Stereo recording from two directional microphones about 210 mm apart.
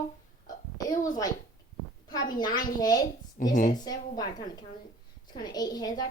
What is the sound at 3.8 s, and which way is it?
A woman's voice, 20° left (ahead or behind).